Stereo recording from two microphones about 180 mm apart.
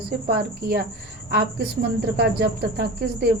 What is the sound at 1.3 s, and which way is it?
Speech, 60° right (ahead or behind).